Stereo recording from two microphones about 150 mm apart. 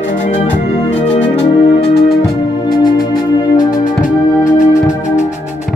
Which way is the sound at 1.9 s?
90° left.